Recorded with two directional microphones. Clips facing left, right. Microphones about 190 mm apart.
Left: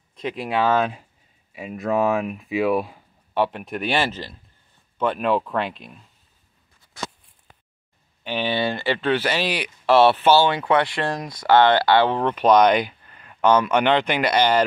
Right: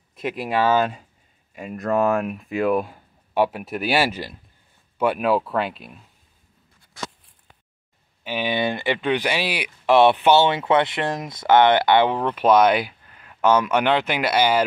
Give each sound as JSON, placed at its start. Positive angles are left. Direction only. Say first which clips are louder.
{"t": 0.1, "sound": "speech", "louder": "right 1 dB", "side_deg": -5}
{"t": 3.3, "sound": "speech", "louder": "right 2 dB", "side_deg": -10}
{"t": 8.2, "sound": "speech", "louder": "even", "side_deg": -10}
{"t": 12.2, "sound": "speech", "louder": "left 1 dB", "side_deg": -5}